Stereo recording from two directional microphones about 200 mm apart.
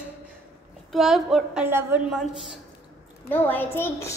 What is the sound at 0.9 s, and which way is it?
A woman's voice, centre (ahead or behind).